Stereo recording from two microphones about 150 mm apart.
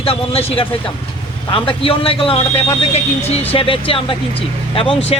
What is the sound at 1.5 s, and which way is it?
A man's voice, 35° left (ahead or behind).